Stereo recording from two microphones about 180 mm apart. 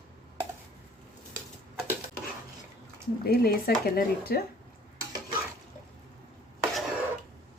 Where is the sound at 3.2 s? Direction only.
55° left (ahead or behind).